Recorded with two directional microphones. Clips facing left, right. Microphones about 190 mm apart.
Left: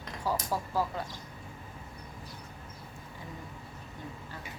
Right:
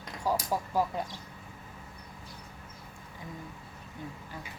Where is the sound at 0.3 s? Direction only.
15° right (ahead or behind).